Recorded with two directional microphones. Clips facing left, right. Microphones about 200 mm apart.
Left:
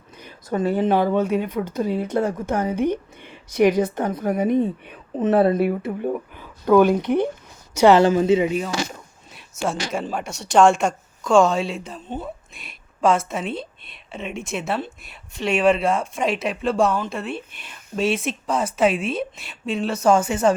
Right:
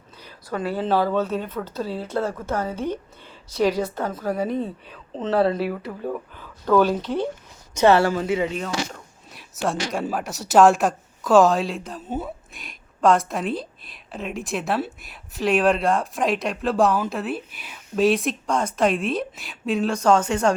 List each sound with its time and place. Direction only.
0.2 s a woman's voice: 20° left (ahead or behind)
8.5 s speech: 5° left (ahead or behind)